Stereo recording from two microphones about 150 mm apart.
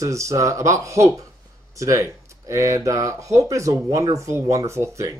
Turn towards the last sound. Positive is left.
turn(degrees=-20)  # may be behind; listen again after turning